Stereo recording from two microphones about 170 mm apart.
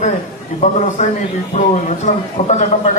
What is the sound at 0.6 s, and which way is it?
A man's voice, 45° left (ahead or behind).